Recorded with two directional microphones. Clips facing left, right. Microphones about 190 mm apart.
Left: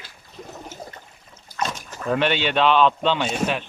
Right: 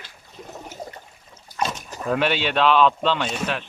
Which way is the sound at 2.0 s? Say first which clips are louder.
Left 1 dB; centre (ahead or behind).